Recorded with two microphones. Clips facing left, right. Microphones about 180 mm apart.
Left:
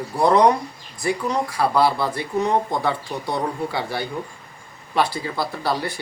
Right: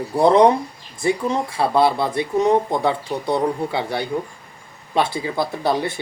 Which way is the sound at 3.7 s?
20° right (ahead or behind).